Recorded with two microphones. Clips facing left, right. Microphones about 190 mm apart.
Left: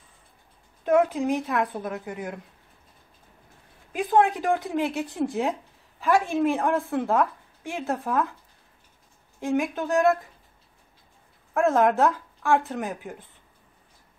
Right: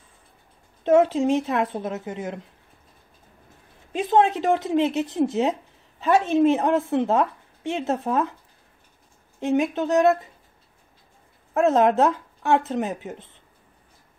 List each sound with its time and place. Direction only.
0.8 s speech: 25° right (ahead or behind)
3.9 s speech: 25° right (ahead or behind)
9.4 s speech: 20° right (ahead or behind)
11.5 s speech: 20° right (ahead or behind)